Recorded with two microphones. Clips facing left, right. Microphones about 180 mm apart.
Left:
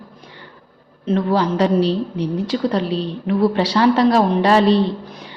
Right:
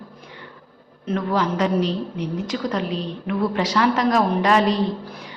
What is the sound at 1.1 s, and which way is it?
A woman's voice, 30° left (ahead or behind).